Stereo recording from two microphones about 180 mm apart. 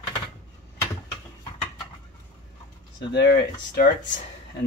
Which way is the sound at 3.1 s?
75° left (ahead or behind).